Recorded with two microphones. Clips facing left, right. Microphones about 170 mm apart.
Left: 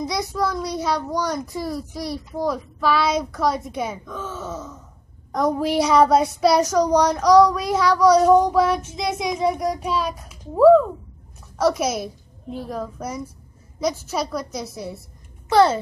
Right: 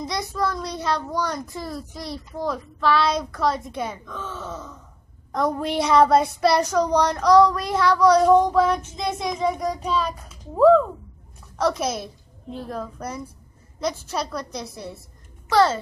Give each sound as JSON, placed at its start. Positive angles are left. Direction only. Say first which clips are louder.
{"t": 0.0, "sound": "a child's voice", "louder": "left 2 dB", "side_deg": 10}